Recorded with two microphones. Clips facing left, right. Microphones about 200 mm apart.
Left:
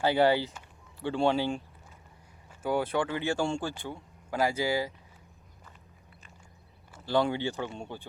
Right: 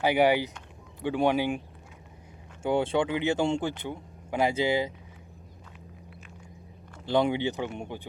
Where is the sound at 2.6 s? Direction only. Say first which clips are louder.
Right 3 dB; 25° right (ahead or behind).